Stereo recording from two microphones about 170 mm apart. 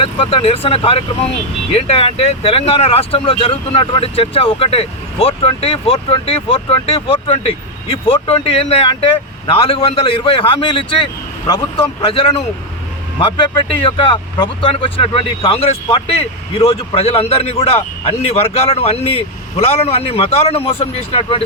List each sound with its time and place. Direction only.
0.0 s speech: 30° left (ahead or behind)